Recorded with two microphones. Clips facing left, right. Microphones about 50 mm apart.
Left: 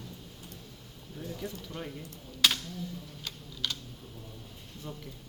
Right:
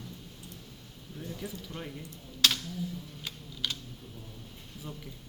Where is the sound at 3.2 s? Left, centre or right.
Centre.